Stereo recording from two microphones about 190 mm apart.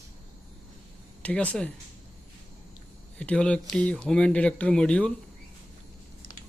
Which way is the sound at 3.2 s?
5° left (ahead or behind).